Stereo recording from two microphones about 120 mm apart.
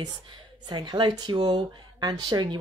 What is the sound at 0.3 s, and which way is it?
Speech, 40° right (ahead or behind).